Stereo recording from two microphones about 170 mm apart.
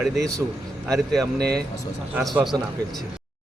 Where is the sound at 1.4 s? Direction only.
65° right (ahead or behind).